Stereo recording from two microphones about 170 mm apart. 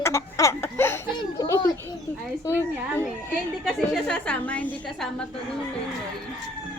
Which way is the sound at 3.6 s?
5° left (ahead or behind).